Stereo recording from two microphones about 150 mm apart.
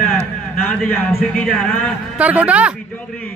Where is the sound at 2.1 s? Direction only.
10° right (ahead or behind).